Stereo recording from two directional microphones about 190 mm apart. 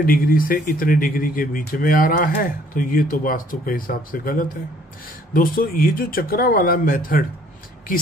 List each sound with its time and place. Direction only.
0.0 s speech: 50° left (ahead or behind)